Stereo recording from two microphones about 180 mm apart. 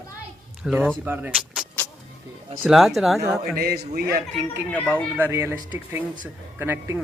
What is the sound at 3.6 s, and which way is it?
Speech, 60° right (ahead or behind).